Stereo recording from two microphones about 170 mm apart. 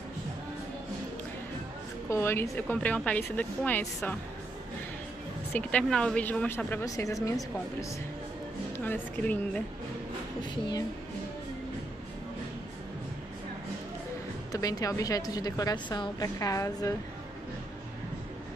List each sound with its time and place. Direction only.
2.0 s a woman's voice: 15° left (ahead or behind)
5.5 s a woman's voice: 10° left (ahead or behind)
8.7 s a woman's voice: 10° left (ahead or behind)
14.5 s a woman's voice: 20° left (ahead or behind)